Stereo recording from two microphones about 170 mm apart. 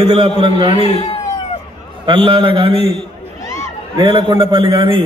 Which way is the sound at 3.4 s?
15° left (ahead or behind).